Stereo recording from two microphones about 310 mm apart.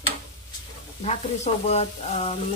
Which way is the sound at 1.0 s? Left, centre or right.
Left.